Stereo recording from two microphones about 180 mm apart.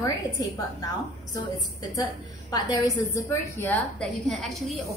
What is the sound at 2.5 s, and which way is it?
A woman's voice, 20° left (ahead or behind).